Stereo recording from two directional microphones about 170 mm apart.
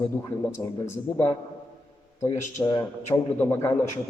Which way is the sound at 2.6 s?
25° left (ahead or behind).